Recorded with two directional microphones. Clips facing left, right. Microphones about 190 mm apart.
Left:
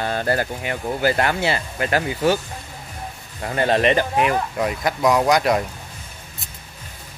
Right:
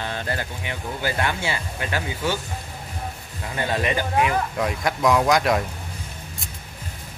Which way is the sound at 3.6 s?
85° left.